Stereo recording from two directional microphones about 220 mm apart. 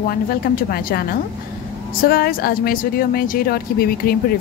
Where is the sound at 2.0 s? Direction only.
45° left (ahead or behind).